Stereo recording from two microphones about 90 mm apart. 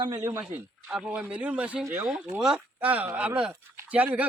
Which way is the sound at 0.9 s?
10° right (ahead or behind).